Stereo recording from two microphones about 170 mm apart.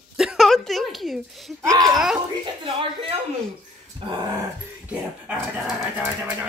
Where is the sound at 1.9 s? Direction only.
5° right (ahead or behind).